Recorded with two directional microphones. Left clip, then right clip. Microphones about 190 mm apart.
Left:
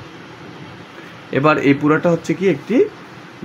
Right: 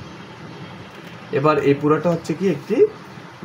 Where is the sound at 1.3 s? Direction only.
50° left (ahead or behind).